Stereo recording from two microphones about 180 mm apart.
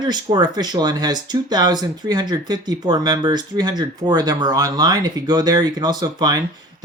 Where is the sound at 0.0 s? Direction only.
25° right (ahead or behind).